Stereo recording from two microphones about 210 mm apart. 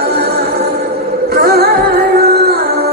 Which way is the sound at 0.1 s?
50° right (ahead or behind).